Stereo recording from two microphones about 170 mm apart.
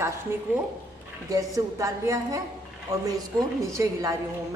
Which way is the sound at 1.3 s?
20° right (ahead or behind).